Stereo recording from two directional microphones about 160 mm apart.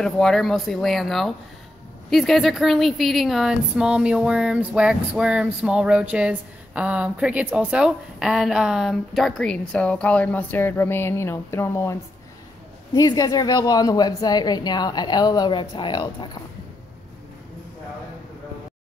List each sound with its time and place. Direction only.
0.0 s a woman's voice: 5° left (ahead or behind); by 16.3 s 30° left (ahead or behind)